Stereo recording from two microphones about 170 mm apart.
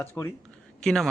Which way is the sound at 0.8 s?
5° left (ahead or behind).